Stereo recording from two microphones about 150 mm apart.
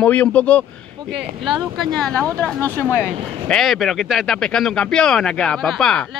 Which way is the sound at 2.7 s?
15° left (ahead or behind).